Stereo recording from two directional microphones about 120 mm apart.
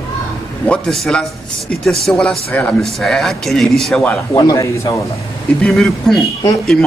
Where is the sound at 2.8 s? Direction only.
5° left (ahead or behind).